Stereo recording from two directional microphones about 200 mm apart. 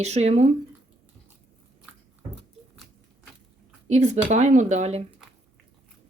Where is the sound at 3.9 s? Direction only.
35° right (ahead or behind).